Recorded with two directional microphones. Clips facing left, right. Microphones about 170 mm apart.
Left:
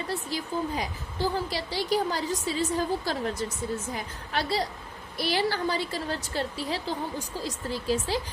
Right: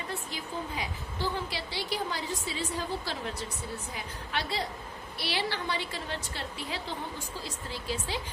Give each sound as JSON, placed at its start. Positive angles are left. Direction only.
{"t": 0.1, "sound": "a woman's voice", "side_deg": 40}